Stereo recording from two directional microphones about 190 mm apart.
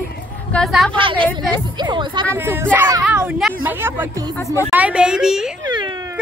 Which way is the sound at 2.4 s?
10° right (ahead or behind).